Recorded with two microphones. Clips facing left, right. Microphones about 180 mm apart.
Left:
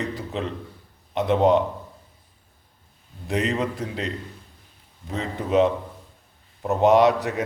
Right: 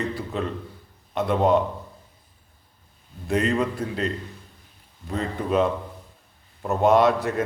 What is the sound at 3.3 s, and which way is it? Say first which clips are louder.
Speech: right 2 dB; 20° left (ahead or behind).